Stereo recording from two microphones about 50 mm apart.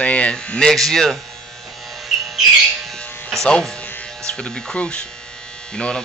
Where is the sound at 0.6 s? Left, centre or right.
Centre.